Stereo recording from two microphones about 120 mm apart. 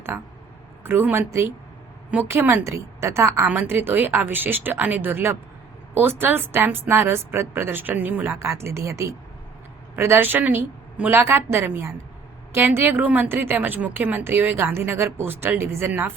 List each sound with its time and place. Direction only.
0.1 s a woman's voice: 15° right (ahead or behind)